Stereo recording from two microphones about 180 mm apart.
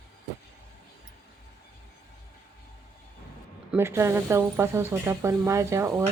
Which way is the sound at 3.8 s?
15° right (ahead or behind).